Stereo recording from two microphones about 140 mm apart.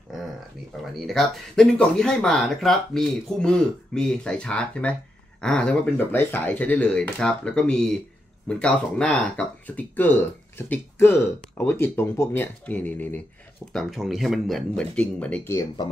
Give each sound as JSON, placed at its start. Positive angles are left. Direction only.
{"t": 0.9, "sound": "speech", "side_deg": 0}
{"t": 13.7, "sound": "speech", "side_deg": 0}